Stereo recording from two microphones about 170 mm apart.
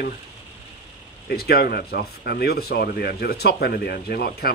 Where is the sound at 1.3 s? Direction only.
65° left (ahead or behind).